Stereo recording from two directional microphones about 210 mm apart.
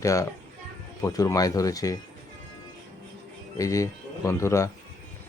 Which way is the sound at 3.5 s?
15° left (ahead or behind).